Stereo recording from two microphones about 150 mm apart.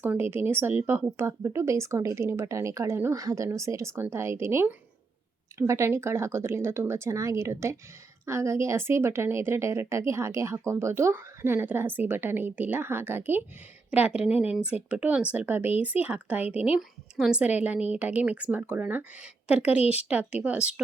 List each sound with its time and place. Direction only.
0.0 s a woman's voice: 15° right (ahead or behind)